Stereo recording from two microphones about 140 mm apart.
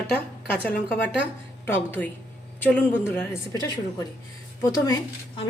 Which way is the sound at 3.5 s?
25° left (ahead or behind).